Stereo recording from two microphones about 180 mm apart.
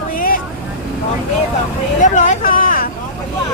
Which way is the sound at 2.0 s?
45° left (ahead or behind).